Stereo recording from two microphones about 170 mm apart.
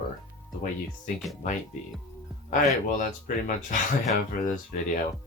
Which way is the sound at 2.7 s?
50° left (ahead or behind).